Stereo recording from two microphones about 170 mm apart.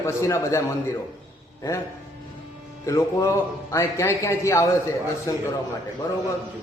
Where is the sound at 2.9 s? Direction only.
15° left (ahead or behind).